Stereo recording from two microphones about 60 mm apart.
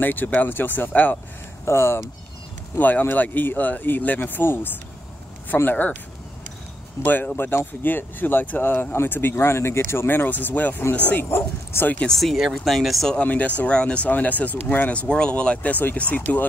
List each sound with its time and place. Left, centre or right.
0.0 s speech: left
1.7 s speech: left
2.8 s speech: left
5.7 s speech: left
7.1 s speech: left
11.2 s speech: left
12.1 s speech: centre
13.1 s speech: left